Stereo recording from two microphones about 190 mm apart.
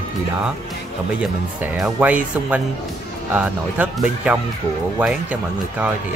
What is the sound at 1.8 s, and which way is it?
Speech, 5° right (ahead or behind).